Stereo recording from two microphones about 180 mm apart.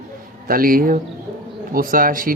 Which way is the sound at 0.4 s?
55° right (ahead or behind).